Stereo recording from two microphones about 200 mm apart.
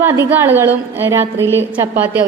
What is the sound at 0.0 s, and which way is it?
A woman's voice, 10° right (ahead or behind).